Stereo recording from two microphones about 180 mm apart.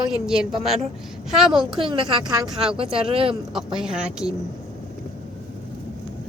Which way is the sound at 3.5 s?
5° right (ahead or behind).